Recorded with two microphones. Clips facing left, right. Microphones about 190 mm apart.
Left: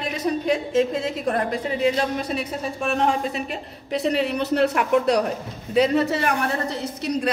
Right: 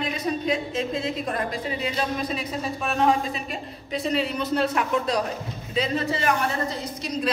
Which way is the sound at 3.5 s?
70° left (ahead or behind).